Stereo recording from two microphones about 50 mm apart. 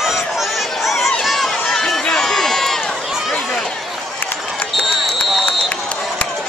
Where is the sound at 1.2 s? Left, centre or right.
Centre.